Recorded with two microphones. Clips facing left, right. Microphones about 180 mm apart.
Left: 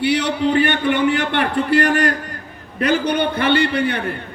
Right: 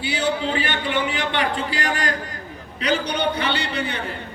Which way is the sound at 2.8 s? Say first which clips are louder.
Left 5 dB; 55° left (ahead or behind).